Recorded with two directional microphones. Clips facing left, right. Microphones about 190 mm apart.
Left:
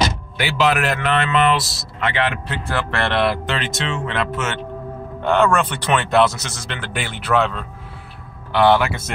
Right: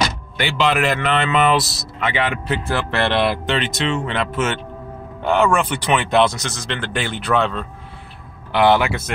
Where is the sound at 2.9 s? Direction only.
25° right (ahead or behind).